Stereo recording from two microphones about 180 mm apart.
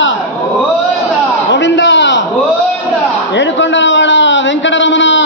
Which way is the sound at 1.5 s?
90° left.